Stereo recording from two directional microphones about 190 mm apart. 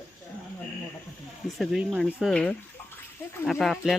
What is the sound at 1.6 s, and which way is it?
Speech, centre (ahead or behind).